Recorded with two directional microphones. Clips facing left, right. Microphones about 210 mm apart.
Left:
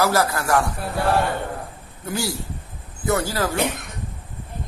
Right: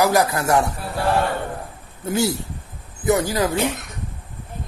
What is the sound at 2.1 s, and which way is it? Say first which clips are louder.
A man's voice: right 5 dB; 20° right (ahead or behind).